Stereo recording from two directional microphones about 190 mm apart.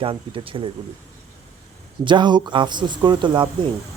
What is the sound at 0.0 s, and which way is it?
Speech, 30° right (ahead or behind).